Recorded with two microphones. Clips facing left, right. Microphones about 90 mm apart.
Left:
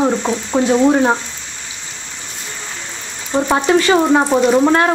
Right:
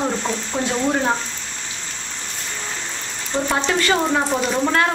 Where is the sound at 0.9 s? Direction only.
30° left (ahead or behind).